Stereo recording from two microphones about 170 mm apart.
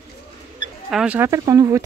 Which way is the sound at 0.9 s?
5° right (ahead or behind).